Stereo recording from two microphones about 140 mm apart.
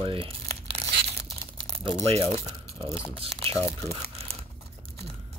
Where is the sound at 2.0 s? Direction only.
45° right (ahead or behind).